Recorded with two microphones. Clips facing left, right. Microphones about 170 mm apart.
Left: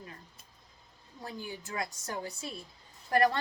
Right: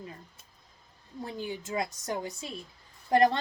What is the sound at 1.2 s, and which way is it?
A woman's voice, 20° right (ahead or behind).